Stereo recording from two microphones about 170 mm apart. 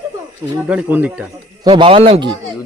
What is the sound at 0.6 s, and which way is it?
Speech, 10° right (ahead or behind).